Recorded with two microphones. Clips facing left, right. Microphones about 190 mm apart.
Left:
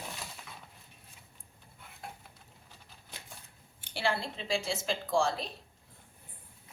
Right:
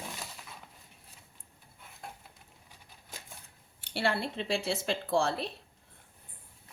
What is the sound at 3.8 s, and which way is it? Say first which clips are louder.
Speech: right 2 dB; 65° right (ahead or behind).